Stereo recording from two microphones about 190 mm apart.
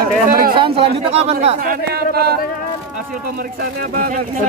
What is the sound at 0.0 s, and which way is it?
Speech, 50° right (ahead or behind).